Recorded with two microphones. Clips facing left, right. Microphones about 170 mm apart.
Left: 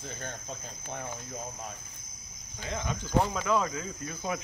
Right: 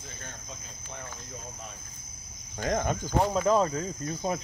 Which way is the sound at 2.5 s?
50° right (ahead or behind).